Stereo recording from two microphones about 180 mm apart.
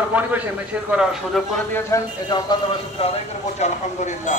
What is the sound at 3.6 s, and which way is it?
Speech, 40° left (ahead or behind).